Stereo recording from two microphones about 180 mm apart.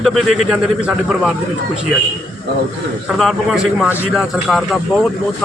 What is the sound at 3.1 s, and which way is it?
Speech, centre (ahead or behind).